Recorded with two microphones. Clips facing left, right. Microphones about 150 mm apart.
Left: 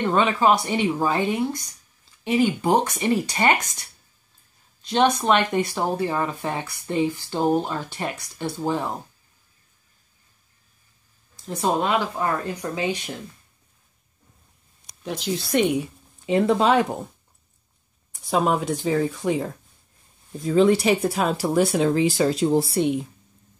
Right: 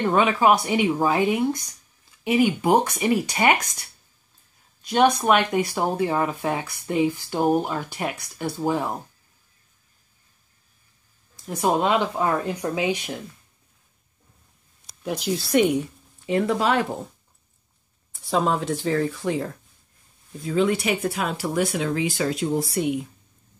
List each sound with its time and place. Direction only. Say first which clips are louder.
0.0 s speech: right 1 dB; 10° right (ahead or behind)
4.8 s speech: right 1 dB; 10° right (ahead or behind)
11.4 s speech: right 1 dB; 15° right (ahead or behind)
15.0 s speech: right 1 dB; 5° right (ahead or behind)
16.3 s speech: left 3 dB; 25° left (ahead or behind)
18.1 s speech: left 1 dB; 15° left (ahead or behind)
20.3 s speech: left 4 dB; 35° left (ahead or behind)